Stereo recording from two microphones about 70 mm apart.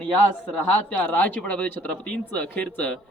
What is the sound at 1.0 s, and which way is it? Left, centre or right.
Speech, left.